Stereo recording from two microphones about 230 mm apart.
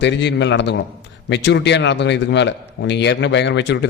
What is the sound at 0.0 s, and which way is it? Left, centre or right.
A man's voice, left.